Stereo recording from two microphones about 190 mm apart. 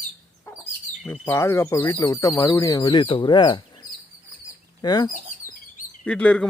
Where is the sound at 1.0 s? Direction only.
10° left (ahead or behind).